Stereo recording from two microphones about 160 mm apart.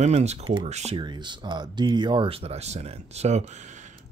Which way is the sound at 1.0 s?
30° right (ahead or behind).